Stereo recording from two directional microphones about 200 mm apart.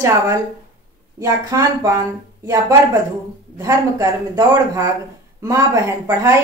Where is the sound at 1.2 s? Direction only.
15° right (ahead or behind).